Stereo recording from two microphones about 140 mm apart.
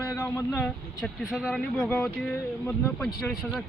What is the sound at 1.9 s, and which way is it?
Speech, 5° left (ahead or behind).